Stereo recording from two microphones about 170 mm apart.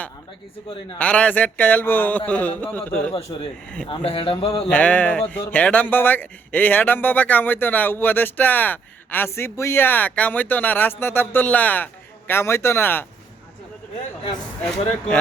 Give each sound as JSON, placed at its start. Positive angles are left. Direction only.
{"t": 0.9, "sound": "speech", "side_deg": 5}
{"t": 3.8, "sound": "speech", "side_deg": 35}
{"t": 4.7, "sound": "speech", "side_deg": 10}